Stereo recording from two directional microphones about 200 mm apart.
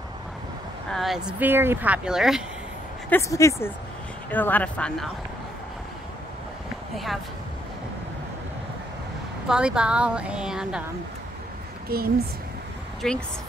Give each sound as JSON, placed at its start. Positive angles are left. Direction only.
{"t": 0.9, "sound": "speech", "side_deg": 0}
{"t": 3.1, "sound": "speech", "side_deg": 15}
{"t": 9.5, "sound": "speech", "side_deg": -5}
{"t": 11.9, "sound": "speech", "side_deg": -50}
{"t": 13.0, "sound": "speech", "side_deg": 5}